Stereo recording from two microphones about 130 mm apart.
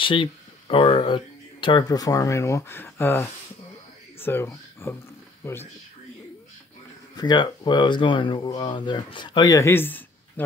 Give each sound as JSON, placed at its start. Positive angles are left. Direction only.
{"t": 0.0, "sound": "speech", "side_deg": 40}
{"t": 7.2, "sound": "speech", "side_deg": 35}